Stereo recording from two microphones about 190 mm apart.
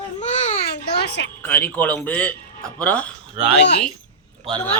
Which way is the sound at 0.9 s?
60° left (ahead or behind).